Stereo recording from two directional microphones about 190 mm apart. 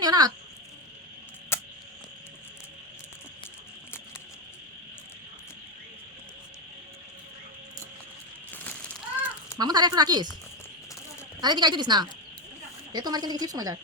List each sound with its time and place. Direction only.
0.0 s speech: 20° right (ahead or behind)
1.5 s a sound: 15° left (ahead or behind)
9.6 s a woman's voice: 20° right (ahead or behind)
11.3 s a woman's voice: 20° right (ahead or behind)